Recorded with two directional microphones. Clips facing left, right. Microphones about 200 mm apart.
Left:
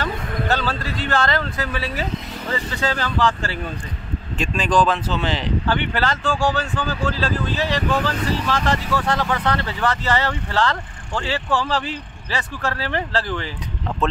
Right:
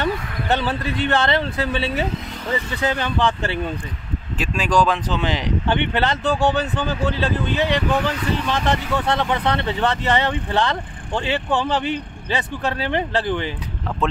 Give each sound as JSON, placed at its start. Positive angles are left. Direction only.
{"t": 0.0, "sound": "speech", "side_deg": -20}
{"t": 4.4, "sound": "speech", "side_deg": -10}